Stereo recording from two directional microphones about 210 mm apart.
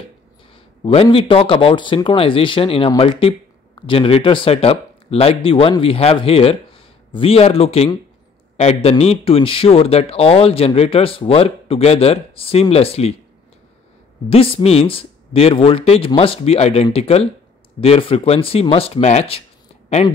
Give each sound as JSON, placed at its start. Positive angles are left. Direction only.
{"t": 0.8, "sound": "speech", "side_deg": 25}
{"t": 14.3, "sound": "speech", "side_deg": 25}